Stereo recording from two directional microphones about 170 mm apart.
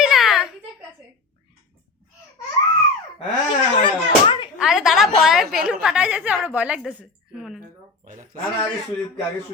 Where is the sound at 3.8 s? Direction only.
30° left (ahead or behind).